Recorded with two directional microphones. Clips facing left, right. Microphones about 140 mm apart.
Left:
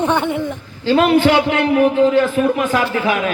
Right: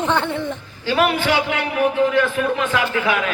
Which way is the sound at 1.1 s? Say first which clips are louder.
Left 7 dB; 45° left (ahead or behind).